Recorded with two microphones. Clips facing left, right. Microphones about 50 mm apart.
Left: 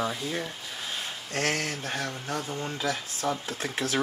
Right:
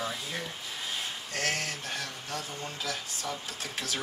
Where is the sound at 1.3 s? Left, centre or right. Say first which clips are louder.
Left 4 dB; left.